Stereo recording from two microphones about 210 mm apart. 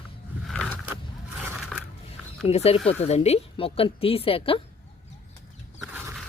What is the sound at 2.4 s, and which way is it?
A woman's voice, 30° left (ahead or behind).